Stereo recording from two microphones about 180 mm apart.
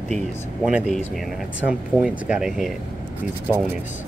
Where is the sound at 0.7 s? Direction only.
5° right (ahead or behind).